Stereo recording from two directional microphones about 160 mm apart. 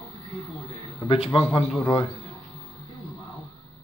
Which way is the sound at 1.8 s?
20° left (ahead or behind).